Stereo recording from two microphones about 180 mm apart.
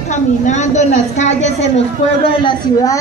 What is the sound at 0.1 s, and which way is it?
A woman's voice, 40° left (ahead or behind).